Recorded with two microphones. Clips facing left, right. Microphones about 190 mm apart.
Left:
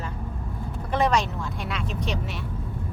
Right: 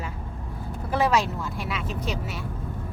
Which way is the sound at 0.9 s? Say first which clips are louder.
Even; 5° right (ahead or behind).